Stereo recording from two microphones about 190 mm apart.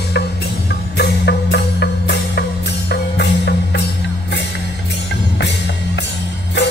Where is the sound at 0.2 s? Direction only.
60° left (ahead or behind).